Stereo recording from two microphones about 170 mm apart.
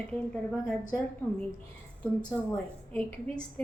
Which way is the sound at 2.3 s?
5° left (ahead or behind).